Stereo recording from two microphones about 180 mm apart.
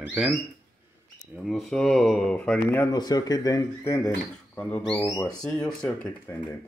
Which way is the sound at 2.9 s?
20° left (ahead or behind).